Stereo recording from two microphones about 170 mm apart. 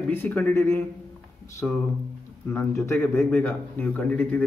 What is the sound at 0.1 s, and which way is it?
A man's voice, 10° left (ahead or behind).